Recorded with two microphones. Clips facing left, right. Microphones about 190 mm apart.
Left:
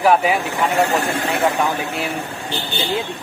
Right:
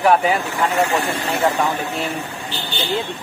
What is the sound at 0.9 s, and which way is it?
Speech, 40° left (ahead or behind).